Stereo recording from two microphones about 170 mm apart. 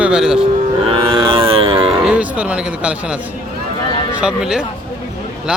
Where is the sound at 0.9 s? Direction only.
35° right (ahead or behind).